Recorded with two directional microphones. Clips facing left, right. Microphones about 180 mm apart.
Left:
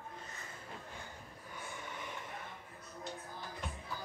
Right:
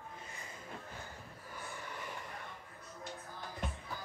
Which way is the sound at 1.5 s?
Centre (ahead or behind).